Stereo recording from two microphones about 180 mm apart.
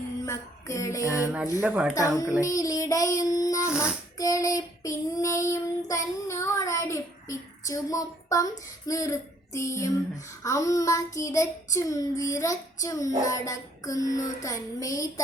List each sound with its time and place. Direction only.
0.3 s music: 15° left (ahead or behind)
1.6 s speech: 10° right (ahead or behind)
2.0 s a woman's voice: 20° left (ahead or behind)
2.4 s child singing: 20° left (ahead or behind)
3.2 s a woman's voice: 20° left (ahead or behind)
4.2 s child singing: 20° left (ahead or behind)
8.9 s a sound: 15° left (ahead or behind)
10.4 s child singing: 15° left (ahead or behind)
13.2 s a woman's voice: 20° left (ahead or behind)